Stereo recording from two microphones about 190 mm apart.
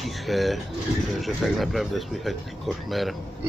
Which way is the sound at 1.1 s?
Centre (ahead or behind).